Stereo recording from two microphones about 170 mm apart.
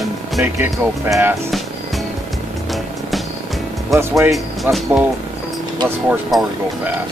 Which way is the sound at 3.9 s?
15° right (ahead or behind).